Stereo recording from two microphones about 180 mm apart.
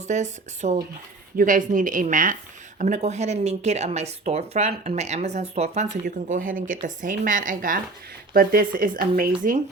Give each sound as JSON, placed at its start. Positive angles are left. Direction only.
{"t": 0.1, "sound": "speech", "side_deg": -40}